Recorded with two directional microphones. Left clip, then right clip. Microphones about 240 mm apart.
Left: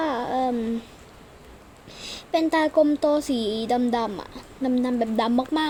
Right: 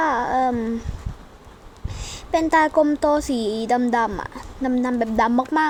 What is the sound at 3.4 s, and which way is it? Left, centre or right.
Speech, right.